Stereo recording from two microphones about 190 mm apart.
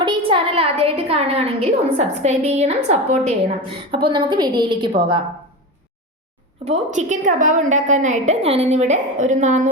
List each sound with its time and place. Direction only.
0.3 s a sound: 30° right (ahead or behind)
2.9 s a woman's voice: 35° right (ahead or behind)
6.7 s a woman's voice: 35° right (ahead or behind)